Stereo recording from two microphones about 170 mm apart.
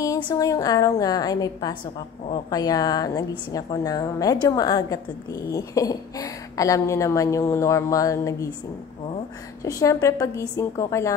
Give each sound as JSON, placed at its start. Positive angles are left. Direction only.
{"t": 0.0, "sound": "a woman's voice", "side_deg": 20}
{"t": 9.6, "sound": "a woman's voice", "side_deg": 20}